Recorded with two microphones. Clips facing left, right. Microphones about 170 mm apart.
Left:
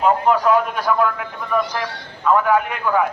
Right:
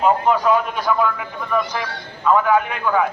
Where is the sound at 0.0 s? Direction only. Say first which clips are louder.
Even; centre (ahead or behind).